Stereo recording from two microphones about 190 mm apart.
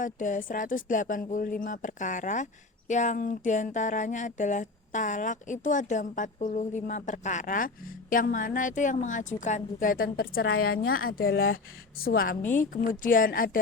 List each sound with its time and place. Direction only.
0.0 s a woman's voice: 45° left (ahead or behind)